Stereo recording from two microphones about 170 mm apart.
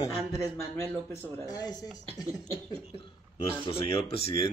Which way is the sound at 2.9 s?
35° left (ahead or behind).